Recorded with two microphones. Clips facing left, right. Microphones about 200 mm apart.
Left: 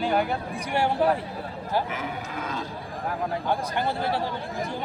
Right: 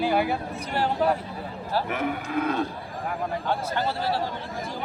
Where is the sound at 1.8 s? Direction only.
60° right (ahead or behind).